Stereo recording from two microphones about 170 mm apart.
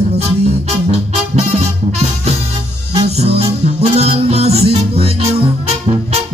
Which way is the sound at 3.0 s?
35° right (ahead or behind).